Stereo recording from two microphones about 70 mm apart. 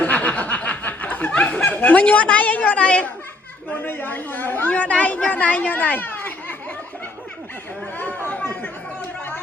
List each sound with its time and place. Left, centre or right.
0.0 s chuckle: left
1.4 s a woman's voice: centre
7.9 s chatter: left